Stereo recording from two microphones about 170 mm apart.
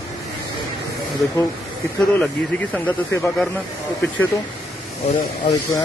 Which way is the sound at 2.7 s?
10° left (ahead or behind).